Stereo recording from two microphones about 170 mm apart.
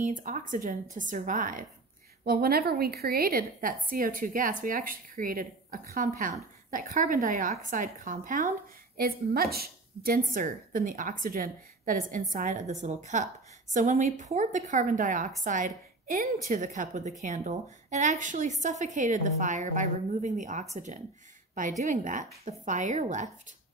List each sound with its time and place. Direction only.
0.0 s speech: 50° right (ahead or behind)
2.2 s a woman's voice: 60° right (ahead or behind); by 23.3 s 45° right (ahead or behind)